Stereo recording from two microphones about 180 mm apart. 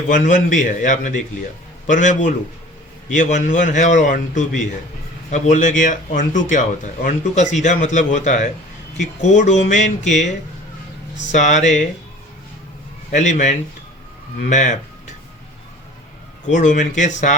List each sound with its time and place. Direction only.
0.1 s a man's voice: 45° left (ahead or behind)
11.3 s a man's voice: 40° left (ahead or behind)
13.1 s a man's voice: 40° left (ahead or behind)
16.5 s a man's voice: 45° left (ahead or behind)